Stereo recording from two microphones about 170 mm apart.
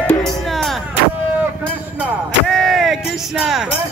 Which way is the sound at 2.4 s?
Centre (ahead or behind).